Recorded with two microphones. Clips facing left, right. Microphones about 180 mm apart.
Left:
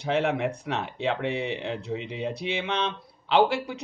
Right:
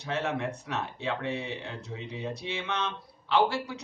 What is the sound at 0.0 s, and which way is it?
A man's voice, 65° left (ahead or behind).